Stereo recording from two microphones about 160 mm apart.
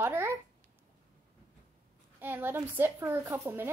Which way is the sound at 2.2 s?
15° right (ahead or behind).